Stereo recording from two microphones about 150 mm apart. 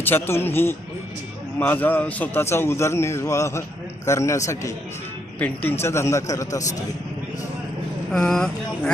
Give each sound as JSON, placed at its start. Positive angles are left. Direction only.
{"t": 0.0, "sound": "a man's voice", "side_deg": 15}
{"t": 8.1, "sound": "speech", "side_deg": 5}